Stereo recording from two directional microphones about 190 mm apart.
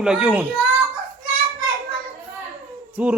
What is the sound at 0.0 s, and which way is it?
Speech, 5° right (ahead or behind).